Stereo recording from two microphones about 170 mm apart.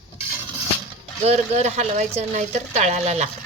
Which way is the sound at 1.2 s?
40° right (ahead or behind).